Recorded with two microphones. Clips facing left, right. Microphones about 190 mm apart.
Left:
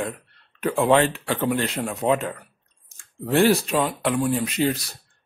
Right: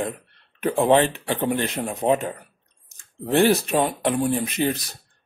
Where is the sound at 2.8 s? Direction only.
20° right (ahead or behind).